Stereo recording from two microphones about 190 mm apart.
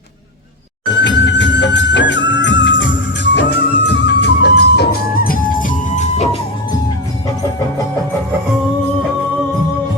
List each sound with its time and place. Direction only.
1.0 s music: 70° left (ahead or behind); by 6.2 s 40° left (ahead or behind)